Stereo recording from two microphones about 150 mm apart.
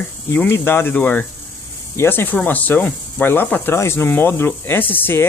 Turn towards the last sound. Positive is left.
turn(degrees=15)  # may be behind; listen again after turning